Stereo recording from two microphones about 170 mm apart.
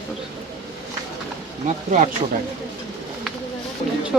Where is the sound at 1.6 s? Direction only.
45° right (ahead or behind).